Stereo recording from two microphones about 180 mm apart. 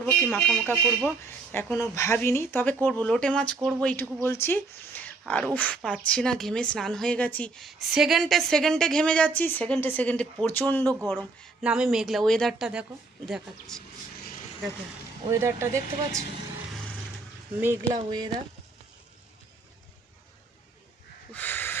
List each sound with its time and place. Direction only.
0.0 s a woman's voice: 10° left (ahead or behind)
11.1 s speech: 5° right (ahead or behind)
15.2 s speech: 15° right (ahead or behind)
17.6 s speech: 10° right (ahead or behind)
21.3 s a sound: 10° left (ahead or behind)